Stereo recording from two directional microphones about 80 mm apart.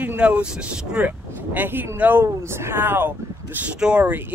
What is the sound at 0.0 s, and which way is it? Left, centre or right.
Speech, right.